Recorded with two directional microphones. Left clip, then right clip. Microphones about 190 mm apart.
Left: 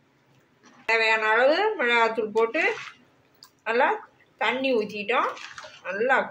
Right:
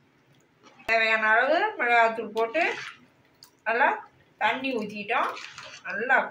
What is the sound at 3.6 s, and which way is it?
Speech, 40° left (ahead or behind).